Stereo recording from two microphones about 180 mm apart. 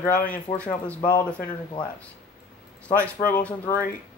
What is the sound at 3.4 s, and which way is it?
Speech, 10° left (ahead or behind).